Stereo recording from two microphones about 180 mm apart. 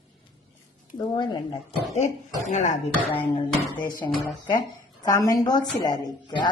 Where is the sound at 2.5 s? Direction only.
40° left (ahead or behind).